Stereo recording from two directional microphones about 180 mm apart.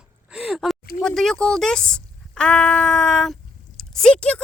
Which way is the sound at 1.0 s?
Centre (ahead or behind).